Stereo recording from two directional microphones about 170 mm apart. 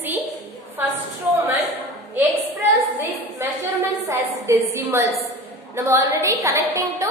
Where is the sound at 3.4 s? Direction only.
15° right (ahead or behind).